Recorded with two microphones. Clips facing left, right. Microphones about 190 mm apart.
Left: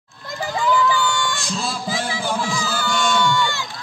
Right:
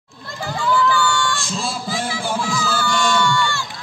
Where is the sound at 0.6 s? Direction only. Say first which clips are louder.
Even; 15° left (ahead or behind).